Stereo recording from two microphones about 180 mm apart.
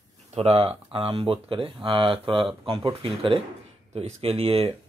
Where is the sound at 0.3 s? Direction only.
35° right (ahead or behind).